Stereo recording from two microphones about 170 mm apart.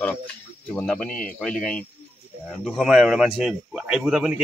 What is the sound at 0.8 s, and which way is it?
A man's voice, 5° left (ahead or behind).